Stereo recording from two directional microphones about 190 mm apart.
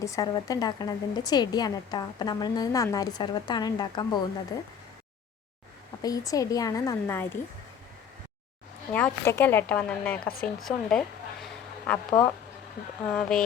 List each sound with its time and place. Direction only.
0.0 s a woman's voice: 15° left (ahead or behind)
6.0 s a woman's voice: 20° left (ahead or behind)
8.9 s a woman's voice: 10° left (ahead or behind)